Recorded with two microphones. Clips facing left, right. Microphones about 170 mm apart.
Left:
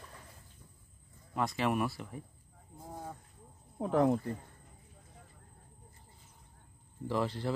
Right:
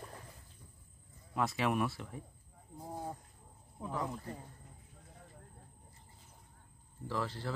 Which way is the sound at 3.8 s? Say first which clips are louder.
Left 11 dB; 65° left (ahead or behind).